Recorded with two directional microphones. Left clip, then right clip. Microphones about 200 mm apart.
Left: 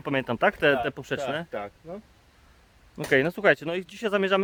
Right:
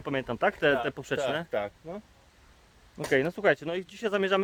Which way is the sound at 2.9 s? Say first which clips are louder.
Left 3 dB; 25° left (ahead or behind).